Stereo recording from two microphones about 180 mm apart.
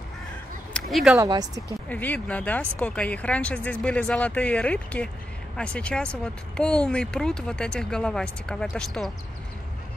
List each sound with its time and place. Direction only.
0.7 s a sound: centre (ahead or behind)
1.1 s speech: 20° right (ahead or behind)
1.9 s speech: 10° left (ahead or behind)